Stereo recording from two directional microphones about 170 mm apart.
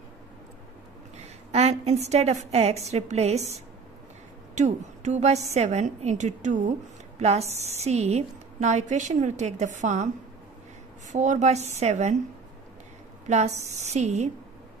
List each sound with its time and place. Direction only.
1.1 s a woman's voice: 40° right (ahead or behind)
4.6 s a woman's voice: 45° right (ahead or behind)
13.3 s a woman's voice: 45° right (ahead or behind)